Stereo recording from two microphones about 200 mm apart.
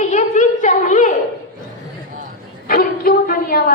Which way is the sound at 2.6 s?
50° left (ahead or behind).